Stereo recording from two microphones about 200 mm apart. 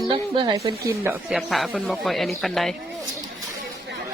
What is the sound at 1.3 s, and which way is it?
Speech, centre (ahead or behind).